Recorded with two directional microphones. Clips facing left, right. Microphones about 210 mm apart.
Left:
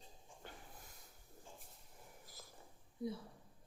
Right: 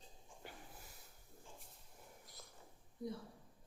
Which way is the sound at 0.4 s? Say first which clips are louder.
Right 1 dB; 10° right (ahead or behind).